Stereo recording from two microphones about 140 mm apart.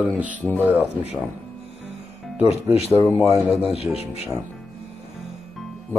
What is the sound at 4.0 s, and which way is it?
Speech, 45° left (ahead or behind).